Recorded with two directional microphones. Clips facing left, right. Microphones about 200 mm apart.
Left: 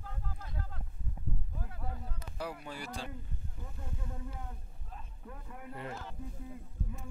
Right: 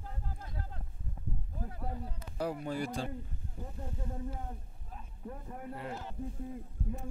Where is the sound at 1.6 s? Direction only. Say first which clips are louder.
Right 6 dB; 35° right (ahead or behind).